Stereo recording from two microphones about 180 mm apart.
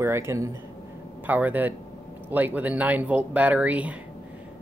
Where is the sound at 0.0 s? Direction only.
15° right (ahead or behind).